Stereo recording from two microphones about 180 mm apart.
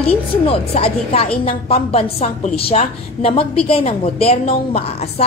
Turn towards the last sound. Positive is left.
turn(degrees=35)  # may be behind; listen again after turning